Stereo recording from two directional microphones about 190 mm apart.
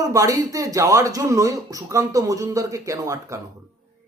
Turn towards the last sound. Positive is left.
turn(degrees=-15)  # may be behind; listen again after turning